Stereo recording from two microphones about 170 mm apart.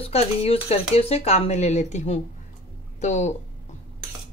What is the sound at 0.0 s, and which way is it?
Speech, 35° left (ahead or behind).